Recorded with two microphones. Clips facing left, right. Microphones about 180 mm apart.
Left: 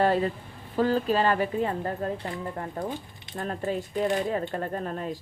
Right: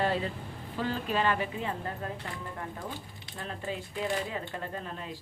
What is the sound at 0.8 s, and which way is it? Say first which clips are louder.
A woman's voice: left 7 dB; 40° left (ahead or behind).